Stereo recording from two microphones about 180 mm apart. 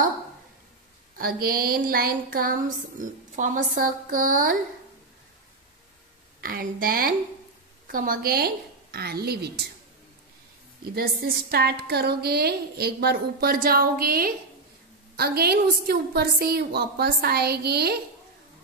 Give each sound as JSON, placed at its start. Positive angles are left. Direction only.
{"t": 1.1, "sound": "speech", "side_deg": -55}
{"t": 6.4, "sound": "a woman's voice", "side_deg": -55}
{"t": 11.0, "sound": "a woman's voice", "side_deg": -55}